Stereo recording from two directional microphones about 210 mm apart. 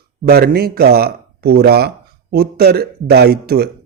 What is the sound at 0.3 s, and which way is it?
Speech, 45° right (ahead or behind).